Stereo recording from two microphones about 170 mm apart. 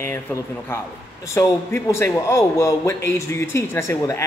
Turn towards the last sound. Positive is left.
turn(degrees=15)  # may be behind; listen again after turning